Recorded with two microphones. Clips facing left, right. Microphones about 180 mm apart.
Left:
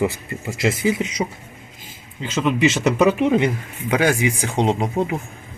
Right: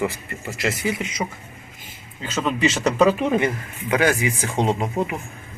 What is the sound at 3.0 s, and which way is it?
Speech, 15° left (ahead or behind).